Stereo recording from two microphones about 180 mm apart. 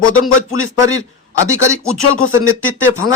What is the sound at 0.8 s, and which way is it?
Speech, 20° right (ahead or behind).